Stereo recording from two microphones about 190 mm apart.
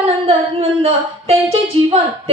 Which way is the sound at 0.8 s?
30° right (ahead or behind).